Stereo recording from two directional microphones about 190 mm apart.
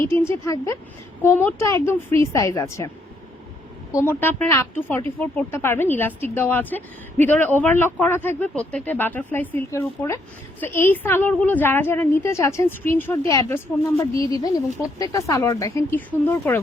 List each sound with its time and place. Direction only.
0.0 s speech: 15° left (ahead or behind)
3.9 s speech: 10° left (ahead or behind)